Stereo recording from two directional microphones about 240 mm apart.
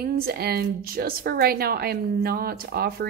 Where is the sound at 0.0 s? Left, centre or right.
Right.